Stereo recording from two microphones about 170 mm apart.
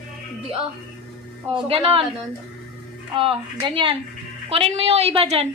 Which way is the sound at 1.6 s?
35° right (ahead or behind).